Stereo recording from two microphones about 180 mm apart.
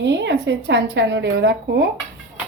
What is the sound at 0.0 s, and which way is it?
Speech, 75° right (ahead or behind).